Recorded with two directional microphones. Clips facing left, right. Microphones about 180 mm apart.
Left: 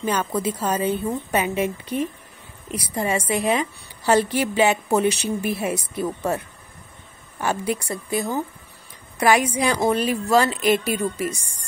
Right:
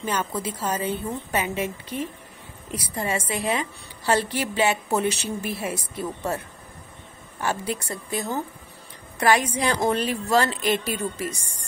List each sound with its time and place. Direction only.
0.0 s a woman's voice: 15° left (ahead or behind)